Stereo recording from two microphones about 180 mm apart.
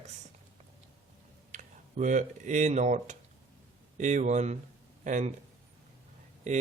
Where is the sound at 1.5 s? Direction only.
45° right (ahead or behind).